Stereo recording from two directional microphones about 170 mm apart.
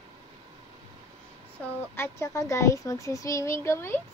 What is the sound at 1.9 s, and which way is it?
A child's voice, 15° left (ahead or behind).